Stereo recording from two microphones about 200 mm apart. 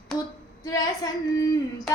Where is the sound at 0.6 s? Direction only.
15° left (ahead or behind).